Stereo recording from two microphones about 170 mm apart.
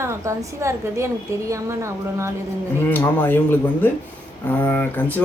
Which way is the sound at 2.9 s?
10° left (ahead or behind).